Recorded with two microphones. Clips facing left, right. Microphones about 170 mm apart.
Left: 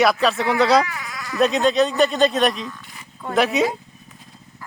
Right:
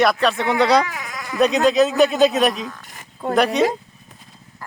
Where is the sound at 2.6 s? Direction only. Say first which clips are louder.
Right 1 dB; 45° right (ahead or behind).